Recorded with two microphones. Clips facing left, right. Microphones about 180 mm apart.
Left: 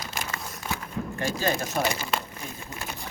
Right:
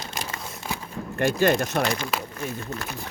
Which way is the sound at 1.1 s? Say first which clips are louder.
Right 7 dB; 65° right (ahead or behind).